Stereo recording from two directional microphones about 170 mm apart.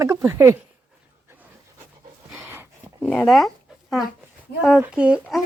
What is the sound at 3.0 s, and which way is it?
Speech, 5° left (ahead or behind).